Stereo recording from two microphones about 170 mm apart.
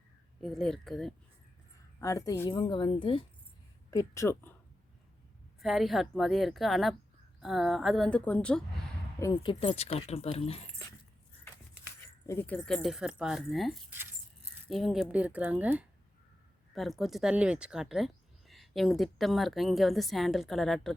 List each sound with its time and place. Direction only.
0.4 s speech: centre (ahead or behind)
2.0 s speech: 20° left (ahead or behind)
2.6 s speech: 30° left (ahead or behind)
3.9 s speech: 15° left (ahead or behind)
5.5 s speech: centre (ahead or behind)
9.1 s speech: 20° left (ahead or behind)
12.2 s speech: 15° left (ahead or behind)